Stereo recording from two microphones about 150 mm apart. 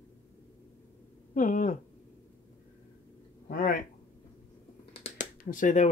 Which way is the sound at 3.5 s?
70° left (ahead or behind).